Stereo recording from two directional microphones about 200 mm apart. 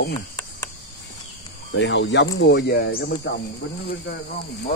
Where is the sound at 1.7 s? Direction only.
65° left (ahead or behind).